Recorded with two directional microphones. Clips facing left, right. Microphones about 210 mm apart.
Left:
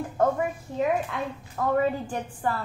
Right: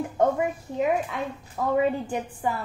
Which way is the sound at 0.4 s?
15° right (ahead or behind).